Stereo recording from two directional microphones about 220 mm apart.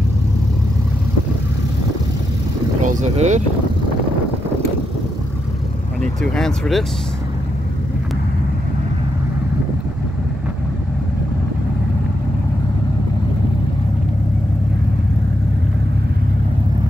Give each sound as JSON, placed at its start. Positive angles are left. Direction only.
{"t": 2.8, "sound": "speech", "side_deg": -35}
{"t": 6.3, "sound": "speech", "side_deg": 0}